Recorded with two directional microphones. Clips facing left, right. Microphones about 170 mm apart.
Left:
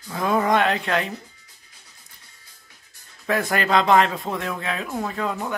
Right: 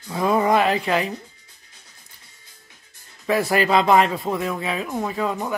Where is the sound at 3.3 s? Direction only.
Centre (ahead or behind).